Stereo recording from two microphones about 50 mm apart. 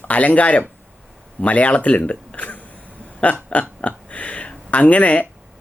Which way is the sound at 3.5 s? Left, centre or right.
Left.